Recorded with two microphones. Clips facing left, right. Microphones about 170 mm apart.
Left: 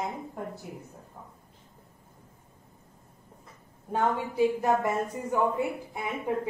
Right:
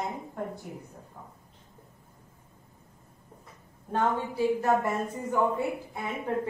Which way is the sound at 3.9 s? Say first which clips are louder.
Even; 15° left (ahead or behind).